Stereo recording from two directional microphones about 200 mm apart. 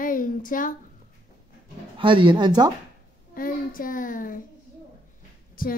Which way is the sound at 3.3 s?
45° left (ahead or behind).